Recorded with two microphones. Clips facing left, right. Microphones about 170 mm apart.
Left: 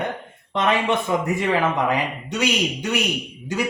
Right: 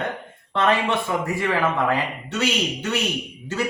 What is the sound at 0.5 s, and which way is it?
A man's voice, 15° left (ahead or behind).